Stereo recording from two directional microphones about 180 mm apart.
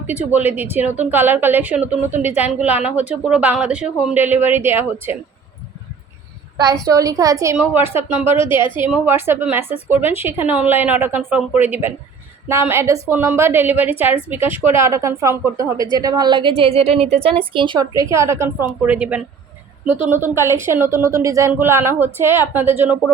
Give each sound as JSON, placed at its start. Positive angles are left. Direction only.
{"t": 0.2, "sound": "speech", "side_deg": -10}
{"t": 6.8, "sound": "speech", "side_deg": -20}
{"t": 8.2, "sound": "a woman's voice", "side_deg": 30}
{"t": 9.0, "sound": "a woman's voice", "side_deg": -10}